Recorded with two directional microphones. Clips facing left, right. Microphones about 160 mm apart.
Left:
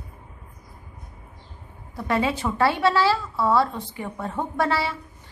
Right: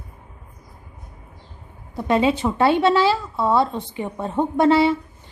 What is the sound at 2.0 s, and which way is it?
A woman's voice, 20° right (ahead or behind).